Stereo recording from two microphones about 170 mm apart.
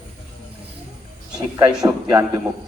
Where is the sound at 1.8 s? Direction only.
20° right (ahead or behind).